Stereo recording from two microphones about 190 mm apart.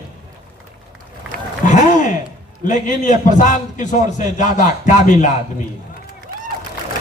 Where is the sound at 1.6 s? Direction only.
40° left (ahead or behind).